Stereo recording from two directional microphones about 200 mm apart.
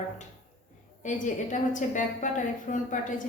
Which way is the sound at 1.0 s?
40° left (ahead or behind).